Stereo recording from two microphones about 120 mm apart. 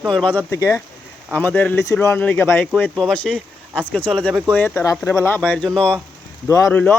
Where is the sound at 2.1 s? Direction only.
10° left (ahead or behind).